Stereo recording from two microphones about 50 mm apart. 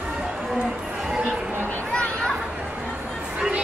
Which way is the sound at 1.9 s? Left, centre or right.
Centre.